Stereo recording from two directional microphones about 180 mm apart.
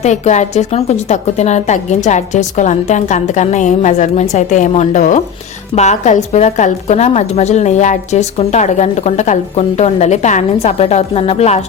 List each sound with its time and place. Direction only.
0.0 s a woman's voice: 40° left (ahead or behind)